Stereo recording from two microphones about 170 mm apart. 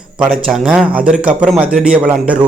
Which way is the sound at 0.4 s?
Centre (ahead or behind).